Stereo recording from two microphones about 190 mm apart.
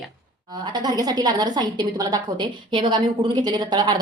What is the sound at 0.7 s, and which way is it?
A woman's voice, 20° right (ahead or behind).